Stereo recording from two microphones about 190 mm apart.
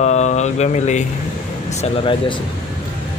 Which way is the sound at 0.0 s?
35° left (ahead or behind).